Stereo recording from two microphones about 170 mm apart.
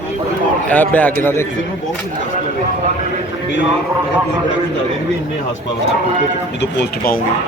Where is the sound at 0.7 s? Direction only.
10° left (ahead or behind).